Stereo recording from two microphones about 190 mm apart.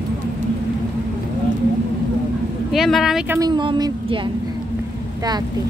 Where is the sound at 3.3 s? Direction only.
20° right (ahead or behind).